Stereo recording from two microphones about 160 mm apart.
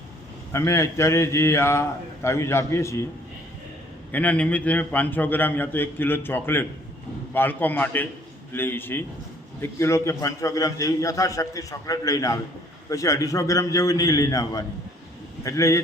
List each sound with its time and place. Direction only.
0.5 s a man's voice: 20° left (ahead or behind)
4.1 s a man's voice: 10° left (ahead or behind)